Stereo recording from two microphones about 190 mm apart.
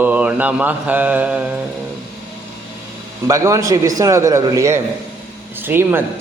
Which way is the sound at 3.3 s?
15° right (ahead or behind).